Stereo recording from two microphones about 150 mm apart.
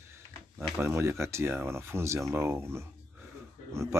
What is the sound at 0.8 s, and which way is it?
Speech, 15° right (ahead or behind).